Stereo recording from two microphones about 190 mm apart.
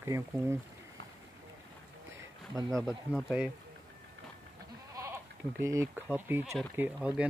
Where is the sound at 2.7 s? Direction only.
5° left (ahead or behind).